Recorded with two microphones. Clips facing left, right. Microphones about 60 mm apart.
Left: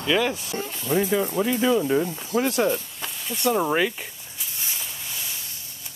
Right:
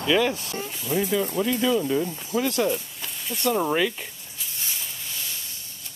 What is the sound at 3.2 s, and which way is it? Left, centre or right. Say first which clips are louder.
Speech: left 1 dB; centre.